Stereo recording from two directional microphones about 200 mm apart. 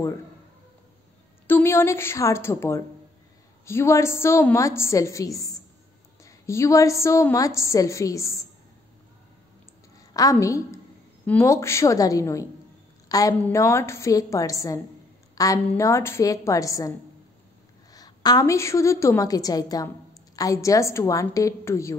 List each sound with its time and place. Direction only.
1.5 s a woman's voice: 10° left (ahead or behind)
9.9 s a woman's voice: 15° left (ahead or behind)
17.9 s a woman's voice: 20° left (ahead or behind)